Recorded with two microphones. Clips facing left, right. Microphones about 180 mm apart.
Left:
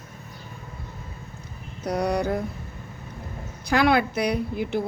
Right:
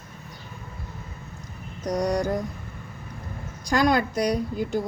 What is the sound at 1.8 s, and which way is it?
Speech, 10° left (ahead or behind).